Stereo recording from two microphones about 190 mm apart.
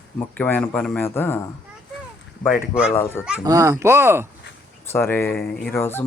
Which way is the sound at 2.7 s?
5° right (ahead or behind).